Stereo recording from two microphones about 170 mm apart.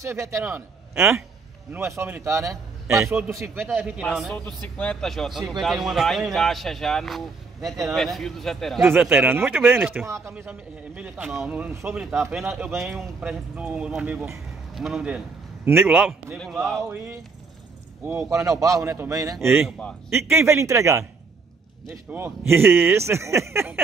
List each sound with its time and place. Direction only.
0.0 s a man's voice: 15° right (ahead or behind); by 8.8 s centre (ahead or behind)
8.8 s speech: 10° right (ahead or behind)
16.9 s a man's voice: 10° right (ahead or behind)
19.6 s speech: 5° left (ahead or behind)
20.3 s speech: 15° right (ahead or behind)